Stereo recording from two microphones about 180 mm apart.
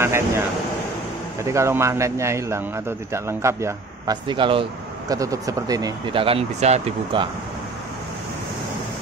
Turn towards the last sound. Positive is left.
turn(degrees=-30)  # may be behind; listen again after turning